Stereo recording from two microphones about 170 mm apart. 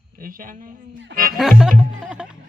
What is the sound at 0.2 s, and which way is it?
Speech, 55° right (ahead or behind).